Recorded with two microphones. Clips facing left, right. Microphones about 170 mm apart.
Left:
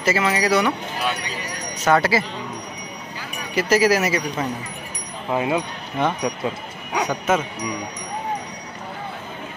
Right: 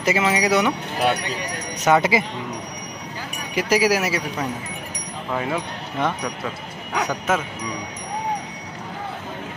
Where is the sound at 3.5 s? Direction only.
10° right (ahead or behind).